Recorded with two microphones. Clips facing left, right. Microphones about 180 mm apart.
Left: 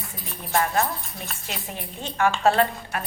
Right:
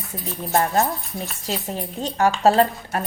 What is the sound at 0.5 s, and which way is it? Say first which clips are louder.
A woman's voice: right 3 dB; 35° right (ahead or behind).